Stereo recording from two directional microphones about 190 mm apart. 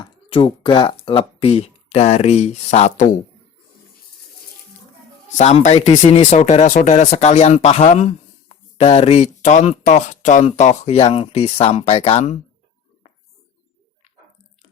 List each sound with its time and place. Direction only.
0.0 s speech: 25° left (ahead or behind)
5.4 s speech: 35° left (ahead or behind)